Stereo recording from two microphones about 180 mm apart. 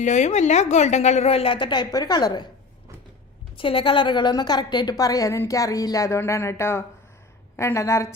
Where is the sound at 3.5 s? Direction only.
30° left (ahead or behind).